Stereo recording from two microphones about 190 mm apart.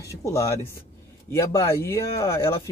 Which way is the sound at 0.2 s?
15° left (ahead or behind).